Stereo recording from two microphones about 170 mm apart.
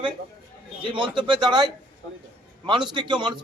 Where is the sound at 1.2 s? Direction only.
25° right (ahead or behind).